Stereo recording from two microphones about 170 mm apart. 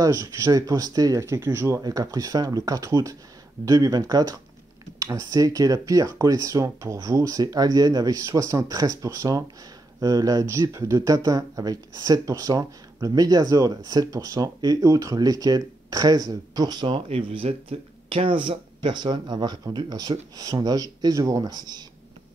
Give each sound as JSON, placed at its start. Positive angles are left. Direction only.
{"t": 0.0, "sound": "speech", "side_deg": -20}